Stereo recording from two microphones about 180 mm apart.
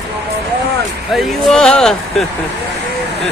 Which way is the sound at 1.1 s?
Centre (ahead or behind).